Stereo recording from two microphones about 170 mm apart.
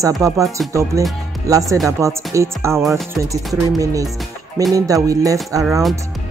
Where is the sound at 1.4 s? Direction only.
20° right (ahead or behind).